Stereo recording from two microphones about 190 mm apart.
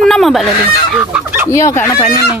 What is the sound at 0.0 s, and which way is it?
Fowl, centre (ahead or behind).